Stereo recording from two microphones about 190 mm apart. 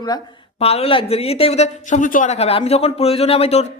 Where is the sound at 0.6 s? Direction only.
30° left (ahead or behind).